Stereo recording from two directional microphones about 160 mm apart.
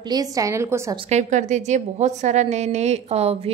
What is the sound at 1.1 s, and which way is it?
A woman's voice, 45° right (ahead or behind).